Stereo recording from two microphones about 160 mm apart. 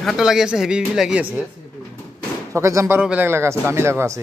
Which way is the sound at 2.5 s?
20° right (ahead or behind).